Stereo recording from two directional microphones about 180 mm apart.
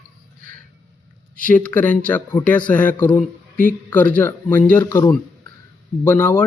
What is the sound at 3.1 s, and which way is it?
Speech, 50° left (ahead or behind).